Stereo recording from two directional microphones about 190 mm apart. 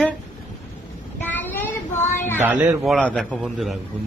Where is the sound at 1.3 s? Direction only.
10° left (ahead or behind).